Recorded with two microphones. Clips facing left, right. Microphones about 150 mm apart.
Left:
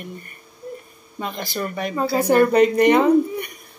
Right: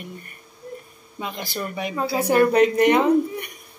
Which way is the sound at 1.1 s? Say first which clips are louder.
Left 3 dB; 5° right (ahead or behind).